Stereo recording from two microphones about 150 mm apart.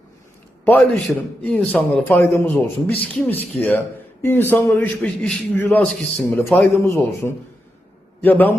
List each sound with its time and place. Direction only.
0.6 s a man's voice: 10° left (ahead or behind)